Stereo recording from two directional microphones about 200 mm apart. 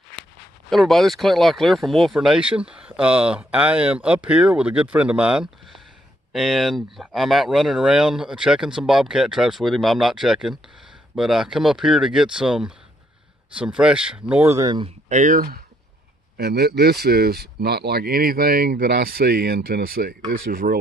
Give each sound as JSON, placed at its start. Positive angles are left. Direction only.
{"t": 0.7, "sound": "speech", "side_deg": 0}
{"t": 15.0, "sound": "speech", "side_deg": -40}